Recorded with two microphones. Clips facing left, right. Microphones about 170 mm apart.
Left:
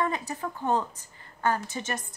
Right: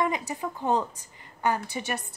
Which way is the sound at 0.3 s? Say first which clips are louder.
Right 1 dB; 15° right (ahead or behind).